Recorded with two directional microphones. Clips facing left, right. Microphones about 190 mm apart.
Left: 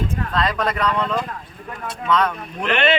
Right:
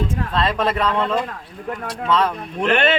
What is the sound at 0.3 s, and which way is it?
A man's voice, 25° right (ahead or behind).